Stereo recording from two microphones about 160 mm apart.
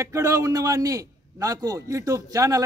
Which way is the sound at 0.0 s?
20° right (ahead or behind).